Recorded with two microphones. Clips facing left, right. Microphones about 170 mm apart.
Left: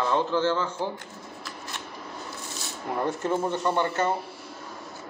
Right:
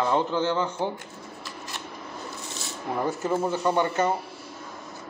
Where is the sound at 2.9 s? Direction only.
5° right (ahead or behind).